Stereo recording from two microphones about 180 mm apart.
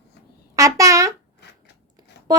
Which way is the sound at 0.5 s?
20° right (ahead or behind).